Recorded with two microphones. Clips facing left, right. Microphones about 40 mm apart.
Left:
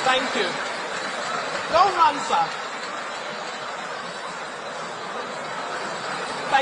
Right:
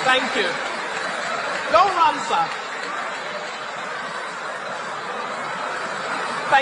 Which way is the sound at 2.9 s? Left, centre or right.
Right.